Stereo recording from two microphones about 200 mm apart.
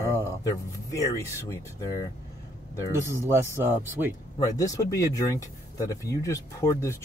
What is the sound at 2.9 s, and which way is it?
Speech, 15° right (ahead or behind).